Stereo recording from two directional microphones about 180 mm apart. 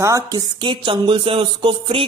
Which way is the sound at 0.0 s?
15° right (ahead or behind).